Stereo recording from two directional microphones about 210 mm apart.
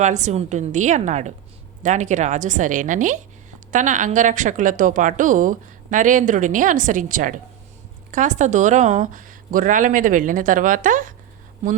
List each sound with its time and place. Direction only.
0.0 s speech: 35° right (ahead or behind)